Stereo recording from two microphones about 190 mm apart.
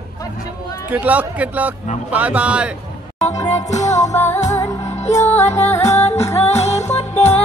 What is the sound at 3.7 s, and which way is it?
Music, 35° left (ahead or behind).